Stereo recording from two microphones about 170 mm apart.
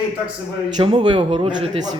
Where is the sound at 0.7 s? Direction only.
25° right (ahead or behind).